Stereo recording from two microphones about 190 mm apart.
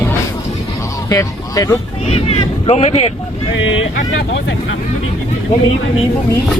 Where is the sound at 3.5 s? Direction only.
90° left.